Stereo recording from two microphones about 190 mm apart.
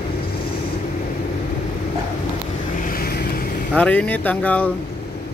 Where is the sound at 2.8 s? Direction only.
50° left (ahead or behind).